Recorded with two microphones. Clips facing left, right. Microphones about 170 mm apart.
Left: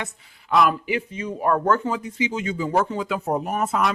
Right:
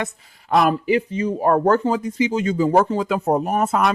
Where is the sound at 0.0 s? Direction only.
45° right (ahead or behind).